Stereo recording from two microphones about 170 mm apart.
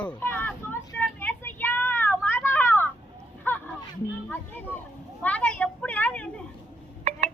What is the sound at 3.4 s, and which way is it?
Hubbub, 10° left (ahead or behind).